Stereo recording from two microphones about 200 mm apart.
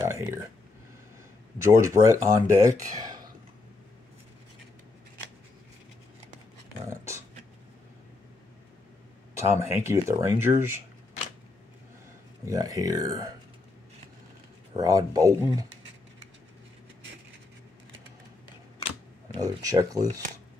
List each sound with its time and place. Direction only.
0.0 s speech: 15° right (ahead or behind)
1.6 s speech: 15° right (ahead or behind)
2.8 s a sound: 20° right (ahead or behind)
6.9 s a sound: 15° right (ahead or behind)
9.3 s speech: 15° right (ahead or behind)
12.4 s speech: 15° right (ahead or behind)
14.8 s speech: 15° right (ahead or behind)
19.3 s speech: 20° right (ahead or behind)